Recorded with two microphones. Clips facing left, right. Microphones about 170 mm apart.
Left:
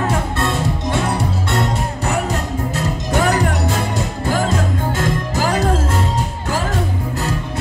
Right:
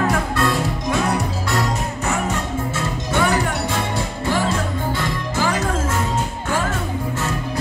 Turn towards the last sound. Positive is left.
turn(degrees=40)  # may be behind; listen again after turning